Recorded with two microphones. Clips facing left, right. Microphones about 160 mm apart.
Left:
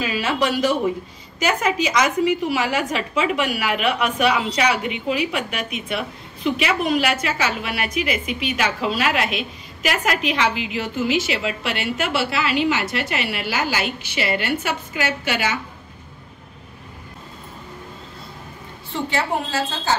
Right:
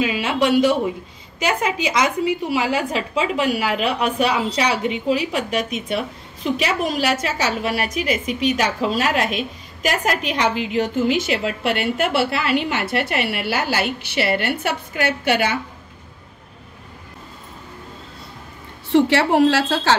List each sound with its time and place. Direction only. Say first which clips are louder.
0.0 s a woman's voice: right 2 dB; 20° right (ahead or behind); by 15.5 s 55° right (ahead or behind)
18.9 s a woman's voice: right 8 dB; 75° right (ahead or behind)